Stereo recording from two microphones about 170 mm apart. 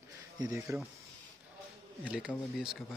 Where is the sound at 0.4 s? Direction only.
15° right (ahead or behind).